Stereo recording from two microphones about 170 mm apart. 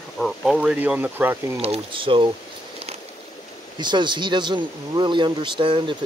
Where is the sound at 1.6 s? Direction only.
35° right (ahead or behind).